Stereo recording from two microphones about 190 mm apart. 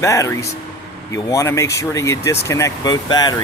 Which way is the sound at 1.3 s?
15° left (ahead or behind).